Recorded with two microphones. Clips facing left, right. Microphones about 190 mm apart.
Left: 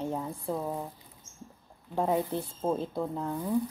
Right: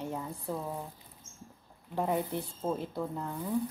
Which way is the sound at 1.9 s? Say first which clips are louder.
Left 3 dB; 15° left (ahead or behind).